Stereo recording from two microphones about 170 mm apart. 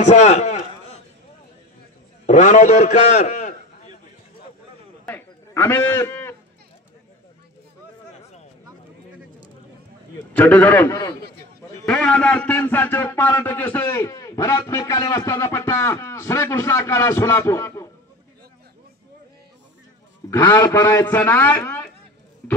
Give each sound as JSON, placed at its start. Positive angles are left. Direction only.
{"t": 0.0, "sound": "speech", "side_deg": 45}
{"t": 2.2, "sound": "a man's voice", "side_deg": 45}
{"t": 5.0, "sound": "sheep", "side_deg": 10}
{"t": 10.3, "sound": "a man's voice", "side_deg": 10}
{"t": 11.8, "sound": "a man's voice", "side_deg": 5}
{"t": 20.2, "sound": "a man's voice", "side_deg": 25}
{"t": 22.4, "sound": "music", "side_deg": 10}